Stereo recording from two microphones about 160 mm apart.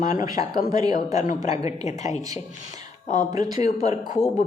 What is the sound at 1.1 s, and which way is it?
Speech, 55° left (ahead or behind).